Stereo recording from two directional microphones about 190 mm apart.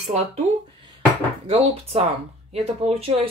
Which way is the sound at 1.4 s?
30° right (ahead or behind).